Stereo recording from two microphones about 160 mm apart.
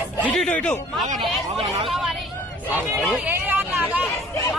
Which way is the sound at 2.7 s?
10° right (ahead or behind).